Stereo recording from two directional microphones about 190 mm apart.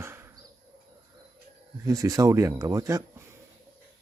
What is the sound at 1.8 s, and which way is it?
Speech, 15° right (ahead or behind).